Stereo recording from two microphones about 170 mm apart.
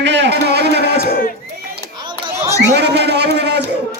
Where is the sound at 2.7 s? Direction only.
80° right.